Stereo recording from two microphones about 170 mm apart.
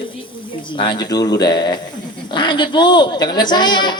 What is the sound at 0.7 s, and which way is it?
A woman's voice, 30° left (ahead or behind).